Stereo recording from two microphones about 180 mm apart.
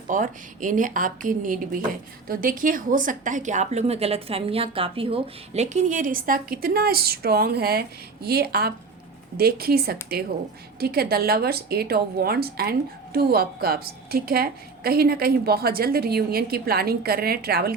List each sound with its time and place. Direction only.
0.1 s a woman's voice: 45° right (ahead or behind)